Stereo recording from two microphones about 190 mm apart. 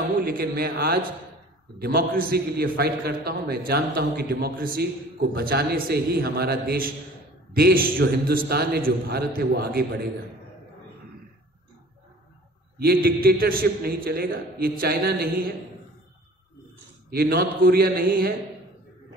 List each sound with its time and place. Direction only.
0.2 s a man's voice: 50° right (ahead or behind)
12.7 s a man's voice: 55° right (ahead or behind)
17.1 s a man's voice: 50° right (ahead or behind)